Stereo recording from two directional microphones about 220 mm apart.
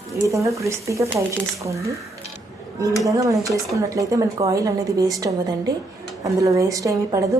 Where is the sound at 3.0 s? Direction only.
15° right (ahead or behind).